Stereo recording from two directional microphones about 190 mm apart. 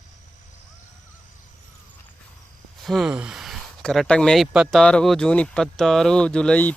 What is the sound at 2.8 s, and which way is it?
Speech, centre (ahead or behind).